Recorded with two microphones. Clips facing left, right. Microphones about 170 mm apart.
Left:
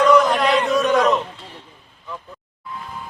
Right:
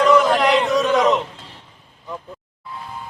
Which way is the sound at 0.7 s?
Centre (ahead or behind).